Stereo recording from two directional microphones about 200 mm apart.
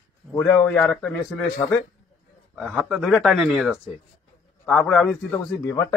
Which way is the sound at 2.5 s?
5° right (ahead or behind).